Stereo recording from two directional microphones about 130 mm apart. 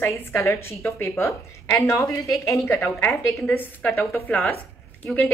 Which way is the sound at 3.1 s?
Centre (ahead or behind).